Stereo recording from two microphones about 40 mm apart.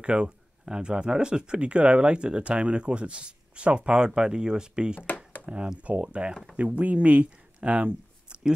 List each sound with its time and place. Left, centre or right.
0.0 s speech: right
5.0 s a sound: left
5.4 s speech: right